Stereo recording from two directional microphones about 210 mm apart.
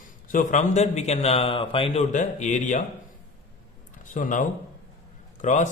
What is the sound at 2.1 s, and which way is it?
Speech, 35° left (ahead or behind).